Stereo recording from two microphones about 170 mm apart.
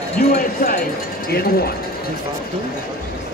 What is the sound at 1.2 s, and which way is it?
Speech, 65° left (ahead or behind).